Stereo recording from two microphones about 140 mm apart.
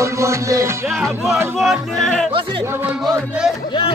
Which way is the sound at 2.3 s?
40° right (ahead or behind).